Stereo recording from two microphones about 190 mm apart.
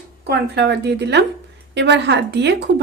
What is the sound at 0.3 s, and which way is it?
A woman's voice, 60° right (ahead or behind).